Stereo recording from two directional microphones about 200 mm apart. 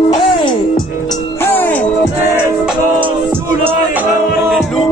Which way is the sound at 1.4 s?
10° left (ahead or behind).